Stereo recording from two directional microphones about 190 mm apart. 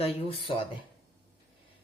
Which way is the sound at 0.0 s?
30° left (ahead or behind).